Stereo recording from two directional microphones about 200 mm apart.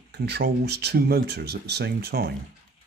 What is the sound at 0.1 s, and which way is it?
Speech, 55° right (ahead or behind).